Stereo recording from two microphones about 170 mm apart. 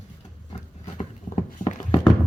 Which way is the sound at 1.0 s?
40° left (ahead or behind).